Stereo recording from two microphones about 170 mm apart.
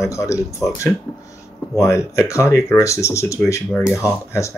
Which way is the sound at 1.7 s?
15° left (ahead or behind).